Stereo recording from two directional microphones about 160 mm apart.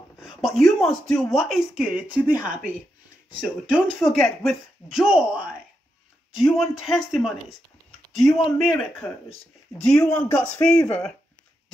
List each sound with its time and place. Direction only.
0.2 s speech: centre (ahead or behind)